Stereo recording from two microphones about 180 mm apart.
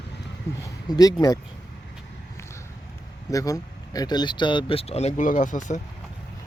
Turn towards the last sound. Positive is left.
turn(degrees=45)  # may be behind; listen again after turning